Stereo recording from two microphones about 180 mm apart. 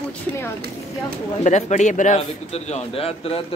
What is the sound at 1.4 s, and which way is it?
Speech, 40° left (ahead or behind).